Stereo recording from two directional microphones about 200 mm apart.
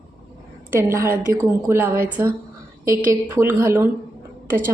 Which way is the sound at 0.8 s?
15° right (ahead or behind).